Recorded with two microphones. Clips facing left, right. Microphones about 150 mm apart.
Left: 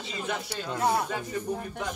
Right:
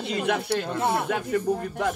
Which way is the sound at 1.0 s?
70° right (ahead or behind).